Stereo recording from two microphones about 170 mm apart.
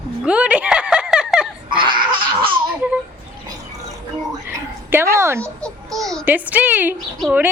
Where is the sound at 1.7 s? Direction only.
30° right (ahead or behind).